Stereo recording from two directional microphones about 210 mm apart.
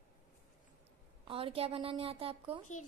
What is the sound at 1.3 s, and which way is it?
A woman's voice, 25° right (ahead or behind).